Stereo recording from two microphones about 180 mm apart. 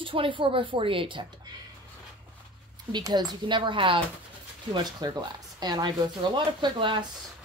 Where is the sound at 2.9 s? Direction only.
25° right (ahead or behind).